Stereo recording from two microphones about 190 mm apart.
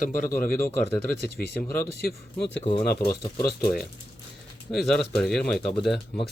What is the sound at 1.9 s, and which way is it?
Speech, 60° left (ahead or behind).